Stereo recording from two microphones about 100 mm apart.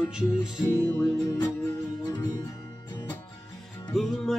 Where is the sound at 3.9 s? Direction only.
5° left (ahead or behind).